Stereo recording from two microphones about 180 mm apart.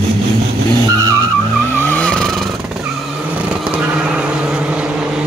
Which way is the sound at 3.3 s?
5° right (ahead or behind).